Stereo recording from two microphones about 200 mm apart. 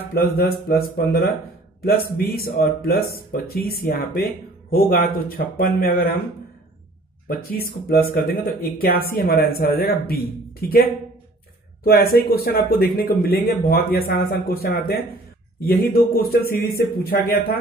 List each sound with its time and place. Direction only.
0.1 s speech: 50° left (ahead or behind)
7.2 s speech: 45° left (ahead or behind)